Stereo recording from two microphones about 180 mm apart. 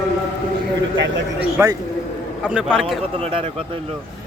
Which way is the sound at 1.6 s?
15° right (ahead or behind).